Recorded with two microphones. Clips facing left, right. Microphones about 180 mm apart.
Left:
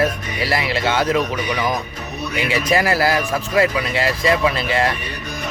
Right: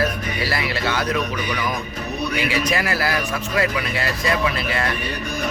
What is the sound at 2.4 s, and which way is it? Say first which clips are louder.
Speech: left 7 dB; 30° left (ahead or behind).